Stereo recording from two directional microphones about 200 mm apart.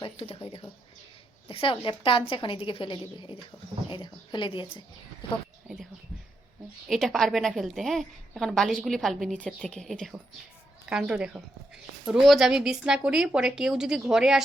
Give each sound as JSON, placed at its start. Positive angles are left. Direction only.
{"t": 0.0, "sound": "a woman's voice", "side_deg": 30}
{"t": 6.8, "sound": "a woman's voice", "side_deg": 0}